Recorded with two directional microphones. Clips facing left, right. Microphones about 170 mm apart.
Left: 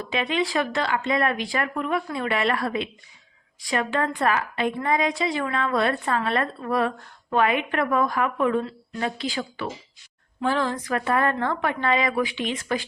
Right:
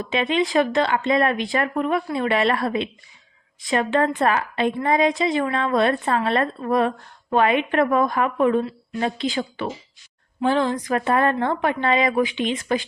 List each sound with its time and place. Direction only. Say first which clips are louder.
0.1 s a woman's voice: right 4 dB; 20° right (ahead or behind)
10.4 s a woman's voice: right 4 dB; 20° right (ahead or behind)